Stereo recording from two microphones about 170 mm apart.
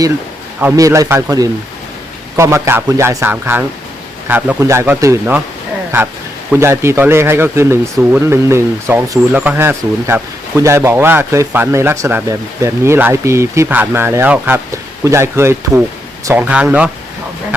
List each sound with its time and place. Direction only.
0.6 s a man's voice: 20° right (ahead or behind)
6.5 s speech: 15° right (ahead or behind)